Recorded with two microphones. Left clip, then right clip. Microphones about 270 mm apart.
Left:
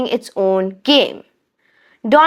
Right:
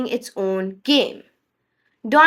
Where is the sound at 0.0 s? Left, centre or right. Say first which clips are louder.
Left 7 dB; left.